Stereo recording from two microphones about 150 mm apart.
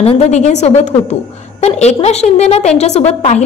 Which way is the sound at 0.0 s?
45° left (ahead or behind).